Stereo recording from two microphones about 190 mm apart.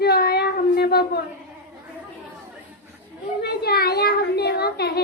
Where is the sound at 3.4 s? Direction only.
55° left (ahead or behind).